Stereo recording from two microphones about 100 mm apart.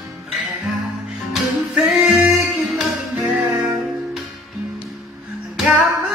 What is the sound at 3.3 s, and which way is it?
Music, 15° right (ahead or behind).